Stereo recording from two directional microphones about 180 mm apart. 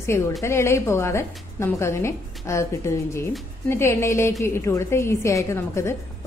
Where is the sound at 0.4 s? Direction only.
15° left (ahead or behind).